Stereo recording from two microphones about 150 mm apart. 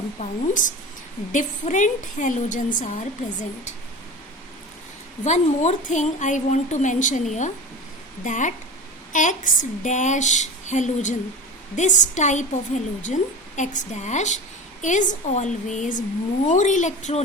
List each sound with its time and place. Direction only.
0.2 s a woman's voice: 60° left (ahead or behind)
5.2 s a woman's voice: 50° left (ahead or behind)